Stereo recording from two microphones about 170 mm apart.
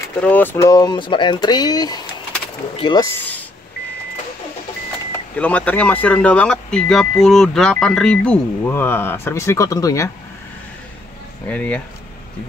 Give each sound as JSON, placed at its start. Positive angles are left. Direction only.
{"t": 0.2, "sound": "speech", "side_deg": 10}
{"t": 5.4, "sound": "speech", "side_deg": 10}
{"t": 11.4, "sound": "speech", "side_deg": 5}